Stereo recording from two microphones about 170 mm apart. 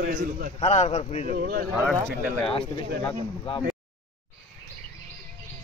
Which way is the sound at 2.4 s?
30° left (ahead or behind).